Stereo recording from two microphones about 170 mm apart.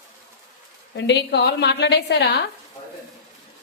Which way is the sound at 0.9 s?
90° left.